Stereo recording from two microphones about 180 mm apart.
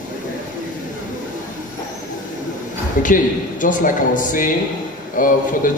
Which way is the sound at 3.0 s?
45° left (ahead or behind).